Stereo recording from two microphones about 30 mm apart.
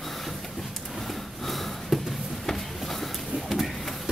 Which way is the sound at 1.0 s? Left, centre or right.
Centre.